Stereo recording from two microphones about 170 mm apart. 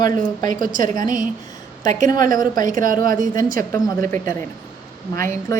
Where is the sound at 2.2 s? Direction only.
50° right (ahead or behind).